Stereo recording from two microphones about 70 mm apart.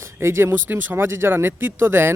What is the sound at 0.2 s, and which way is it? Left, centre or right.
Speech, right.